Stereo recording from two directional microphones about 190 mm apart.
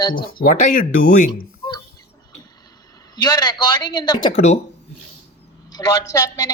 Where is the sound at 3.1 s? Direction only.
20° left (ahead or behind).